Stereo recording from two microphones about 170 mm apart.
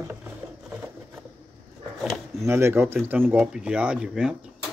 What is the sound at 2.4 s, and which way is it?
Speech, 15° right (ahead or behind).